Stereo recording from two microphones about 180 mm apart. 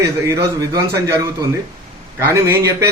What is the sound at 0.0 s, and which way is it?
Speech, 15° right (ahead or behind).